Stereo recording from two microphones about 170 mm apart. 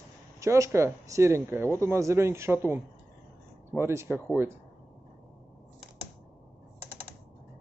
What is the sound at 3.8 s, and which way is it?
Speech, 15° right (ahead or behind).